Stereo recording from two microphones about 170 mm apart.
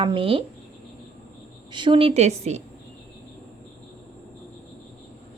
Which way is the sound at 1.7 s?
30° right (ahead or behind).